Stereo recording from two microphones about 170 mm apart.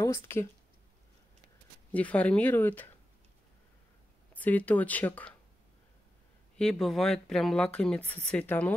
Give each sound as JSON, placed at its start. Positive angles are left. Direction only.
{"t": 0.0, "sound": "speech", "side_deg": 20}
{"t": 1.9, "sound": "speech", "side_deg": 10}
{"t": 4.3, "sound": "speech", "side_deg": 10}
{"t": 6.5, "sound": "speech", "side_deg": 5}